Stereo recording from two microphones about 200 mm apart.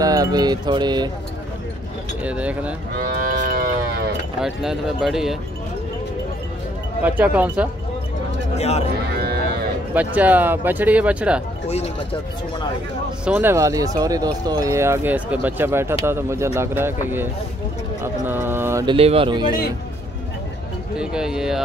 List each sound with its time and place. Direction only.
0.0 s music: 20° right (ahead or behind)
2.2 s speech: 5° right (ahead or behind)
3.0 s moo: 45° right (ahead or behind)
4.4 s speech: centre (ahead or behind)
7.0 s speech: 5° right (ahead or behind)
8.5 s speech: 30° left (ahead or behind)
9.1 s livestock: 50° right (ahead or behind)
9.9 s speech: 10° right (ahead or behind)
13.2 s speech: 10° right (ahead or behind)
18.0 s mantra: 10° right (ahead or behind)
18.9 s music: 30° right (ahead or behind)
20.9 s speech: 5° right (ahead or behind)